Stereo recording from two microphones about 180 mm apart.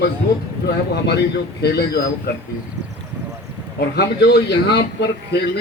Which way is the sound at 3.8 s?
65° left (ahead or behind).